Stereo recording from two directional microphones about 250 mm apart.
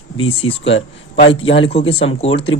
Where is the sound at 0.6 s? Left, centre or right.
Left.